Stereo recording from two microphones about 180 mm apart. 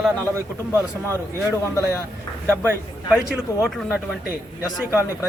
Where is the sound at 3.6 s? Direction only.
Centre (ahead or behind).